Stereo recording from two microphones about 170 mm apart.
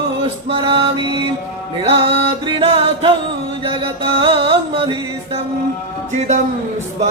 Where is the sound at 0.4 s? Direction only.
30° right (ahead or behind).